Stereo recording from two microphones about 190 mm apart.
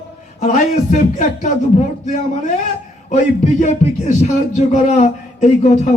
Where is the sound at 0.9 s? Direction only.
40° left (ahead or behind).